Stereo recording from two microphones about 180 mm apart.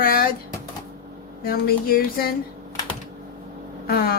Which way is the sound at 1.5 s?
55° left (ahead or behind).